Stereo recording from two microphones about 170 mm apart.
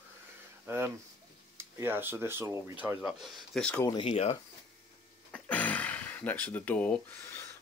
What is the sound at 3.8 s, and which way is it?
Speech, 30° left (ahead or behind).